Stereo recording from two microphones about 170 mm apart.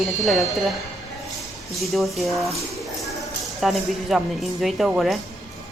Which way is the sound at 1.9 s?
Centre (ahead or behind).